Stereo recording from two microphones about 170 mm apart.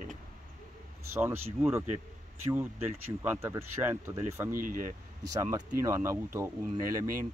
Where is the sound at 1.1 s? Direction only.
10° right (ahead or behind).